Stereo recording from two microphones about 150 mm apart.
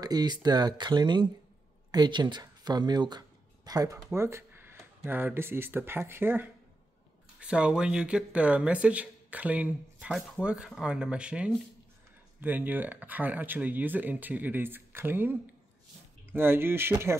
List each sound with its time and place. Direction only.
0.0 s speech: 25° right (ahead or behind)